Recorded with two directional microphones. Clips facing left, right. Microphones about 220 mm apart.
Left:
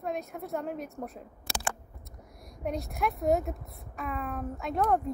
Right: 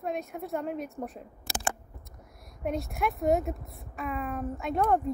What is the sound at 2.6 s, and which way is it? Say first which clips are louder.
A woman's voice: right 1 dB; centre (ahead or behind).